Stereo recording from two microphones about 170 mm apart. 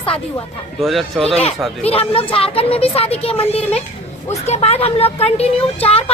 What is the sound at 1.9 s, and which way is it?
Speech, 35° left (ahead or behind).